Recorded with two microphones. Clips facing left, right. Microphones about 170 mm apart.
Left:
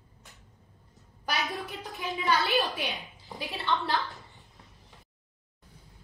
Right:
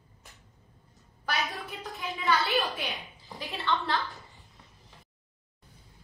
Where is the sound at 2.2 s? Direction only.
20° left (ahead or behind).